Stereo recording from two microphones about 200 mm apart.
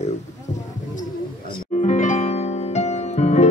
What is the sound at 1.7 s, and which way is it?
Music, 35° left (ahead or behind).